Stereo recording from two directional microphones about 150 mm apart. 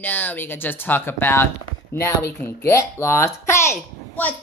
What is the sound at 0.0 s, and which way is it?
Speech, 10° left (ahead or behind).